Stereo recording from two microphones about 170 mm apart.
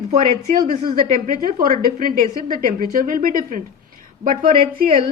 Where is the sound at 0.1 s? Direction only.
45° right (ahead or behind).